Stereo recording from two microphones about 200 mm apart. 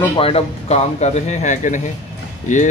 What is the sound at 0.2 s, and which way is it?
Speech, 30° left (ahead or behind).